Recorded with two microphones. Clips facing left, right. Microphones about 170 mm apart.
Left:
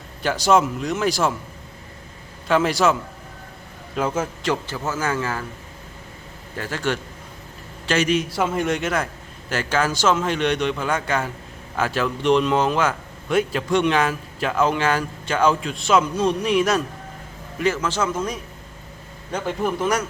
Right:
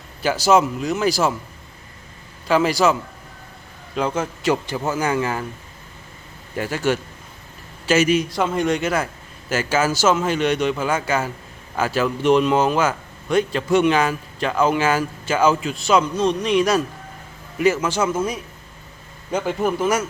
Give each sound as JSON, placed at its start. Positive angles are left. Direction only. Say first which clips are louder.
{"t": 0.2, "sound": "a man's voice", "louder": "right 2 dB", "side_deg": 0}
{"t": 2.5, "sound": "a man's voice", "louder": "right 1 dB", "side_deg": 0}
{"t": 4.4, "sound": "a man's voice", "louder": "right 3 dB", "side_deg": -15}
{"t": 6.6, "sound": "a man's voice", "louder": "right 4 dB", "side_deg": -10}
{"t": 17.6, "sound": "a man's voice", "louder": "right 3 dB", "side_deg": -10}